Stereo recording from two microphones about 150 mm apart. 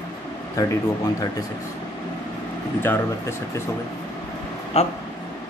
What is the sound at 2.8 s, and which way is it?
Speech, 15° left (ahead or behind).